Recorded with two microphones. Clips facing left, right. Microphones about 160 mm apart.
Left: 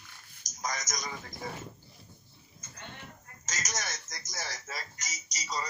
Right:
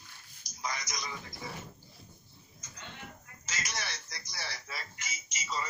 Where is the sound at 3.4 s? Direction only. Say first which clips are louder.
Left 2 dB; 45° left (ahead or behind).